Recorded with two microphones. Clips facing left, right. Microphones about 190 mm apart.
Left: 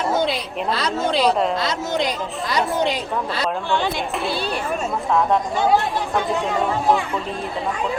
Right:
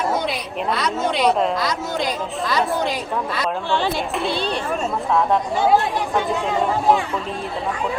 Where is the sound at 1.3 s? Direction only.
Centre (ahead or behind).